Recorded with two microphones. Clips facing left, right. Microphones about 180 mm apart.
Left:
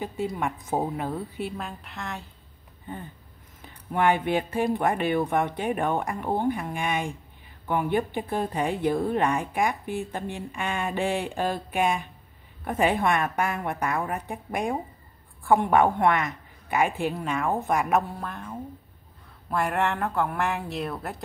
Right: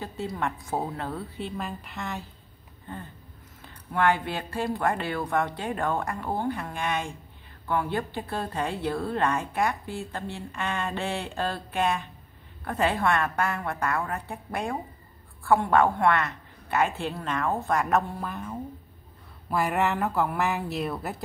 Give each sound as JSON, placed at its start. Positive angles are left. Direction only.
{"t": 0.0, "sound": "a woman's voice", "side_deg": 15}
{"t": 1.6, "sound": "speech", "side_deg": 0}
{"t": 3.6, "sound": "a woman's voice", "side_deg": 15}